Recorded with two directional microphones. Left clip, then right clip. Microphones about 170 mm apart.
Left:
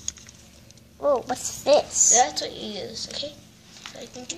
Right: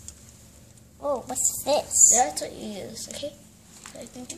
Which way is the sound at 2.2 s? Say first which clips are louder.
Left 3 dB; 5° right (ahead or behind).